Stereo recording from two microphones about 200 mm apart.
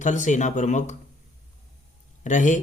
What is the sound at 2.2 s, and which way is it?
Speech, 40° left (ahead or behind).